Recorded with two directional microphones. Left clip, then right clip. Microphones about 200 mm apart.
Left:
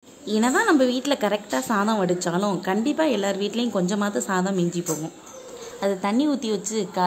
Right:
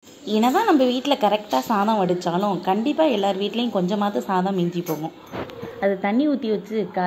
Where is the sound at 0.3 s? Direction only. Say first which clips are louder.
Right 2 dB; 10° left (ahead or behind).